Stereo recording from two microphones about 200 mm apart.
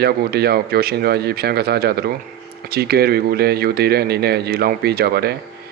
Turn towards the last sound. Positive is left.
turn(degrees=-50)  # may be behind; listen again after turning